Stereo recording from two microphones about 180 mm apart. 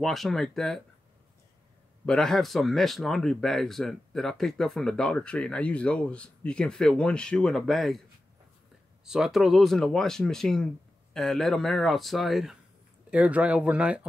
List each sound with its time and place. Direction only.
0.0 s speech: centre (ahead or behind)
2.0 s speech: centre (ahead or behind)
9.0 s speech: centre (ahead or behind)